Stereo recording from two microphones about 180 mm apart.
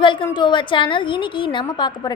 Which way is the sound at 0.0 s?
25° left (ahead or behind).